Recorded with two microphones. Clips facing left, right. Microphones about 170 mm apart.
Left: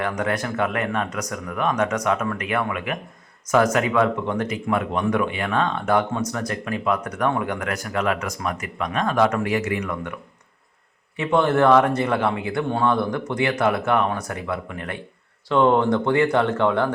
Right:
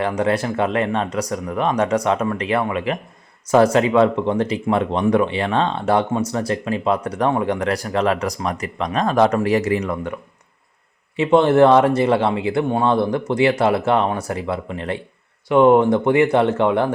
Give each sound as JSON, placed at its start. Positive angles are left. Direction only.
{"t": 0.0, "sound": "speech", "side_deg": -30}
{"t": 11.2, "sound": "speech", "side_deg": -25}